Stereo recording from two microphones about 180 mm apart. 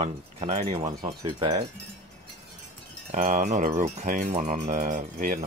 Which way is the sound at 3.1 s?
45° right (ahead or behind).